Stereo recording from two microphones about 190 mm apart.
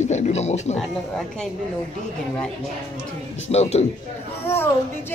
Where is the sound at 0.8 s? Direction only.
Centre (ahead or behind).